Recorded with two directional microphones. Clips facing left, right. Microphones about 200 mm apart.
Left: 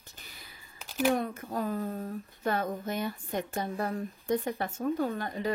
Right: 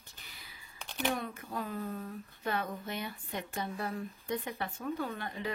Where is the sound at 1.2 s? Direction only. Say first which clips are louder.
Left 6 dB; 40° left (ahead or behind).